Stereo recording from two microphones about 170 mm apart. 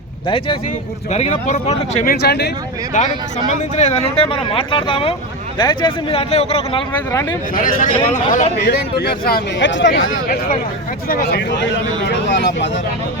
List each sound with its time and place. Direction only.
0.3 s speech: 30° left (ahead or behind)
1.1 s speech: 40° left (ahead or behind)
2.0 s speech: 70° left (ahead or behind)
2.9 s speech: 45° left (ahead or behind)
7.1 s speech: 15° left (ahead or behind)
7.5 s speech: 55° left (ahead or behind)
8.6 s speech: 70° left (ahead or behind); by 10.0 s 90° left
11.1 s speech: 70° left (ahead or behind)
12.0 s speech: 90° left